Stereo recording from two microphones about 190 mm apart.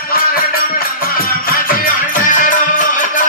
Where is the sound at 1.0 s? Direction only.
50° left (ahead or behind).